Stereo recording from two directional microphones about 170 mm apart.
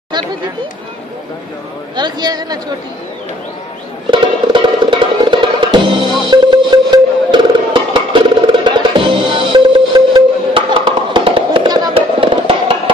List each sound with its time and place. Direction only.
2.0 s speech: 25° right (ahead or behind)
4.1 s music: 30° right (ahead or behind)